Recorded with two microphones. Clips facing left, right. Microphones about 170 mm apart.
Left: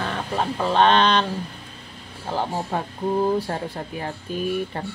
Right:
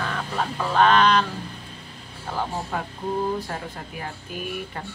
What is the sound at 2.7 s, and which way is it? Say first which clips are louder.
Speech: left 5 dB; 30° left (ahead or behind).